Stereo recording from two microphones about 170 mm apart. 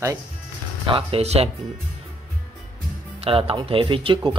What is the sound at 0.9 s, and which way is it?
Speech, 35° right (ahead or behind).